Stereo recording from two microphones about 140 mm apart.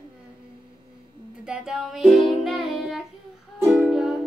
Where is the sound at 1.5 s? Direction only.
5° right (ahead or behind).